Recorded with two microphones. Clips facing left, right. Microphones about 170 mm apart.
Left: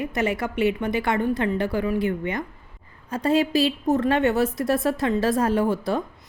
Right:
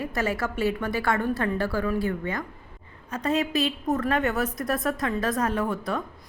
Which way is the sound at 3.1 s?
30° left (ahead or behind).